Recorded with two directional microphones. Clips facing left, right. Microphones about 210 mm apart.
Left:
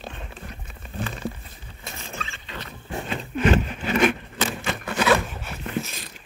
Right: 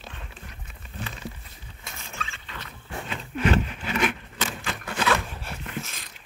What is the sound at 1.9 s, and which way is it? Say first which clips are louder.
Vehicle: left 4 dB; 25° left (ahead or behind).